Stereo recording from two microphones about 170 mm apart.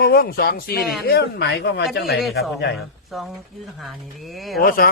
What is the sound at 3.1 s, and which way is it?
Speech, centre (ahead or behind).